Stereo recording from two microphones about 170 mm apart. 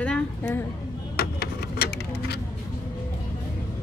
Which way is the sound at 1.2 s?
70° left (ahead or behind).